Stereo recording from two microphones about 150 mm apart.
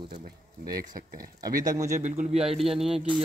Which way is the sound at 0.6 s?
75° right (ahead or behind).